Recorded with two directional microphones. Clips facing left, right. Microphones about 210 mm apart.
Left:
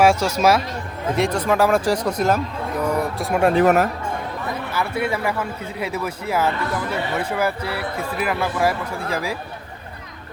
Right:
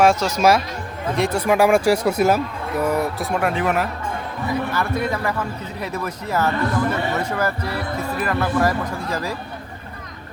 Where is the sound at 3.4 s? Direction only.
35° left (ahead or behind).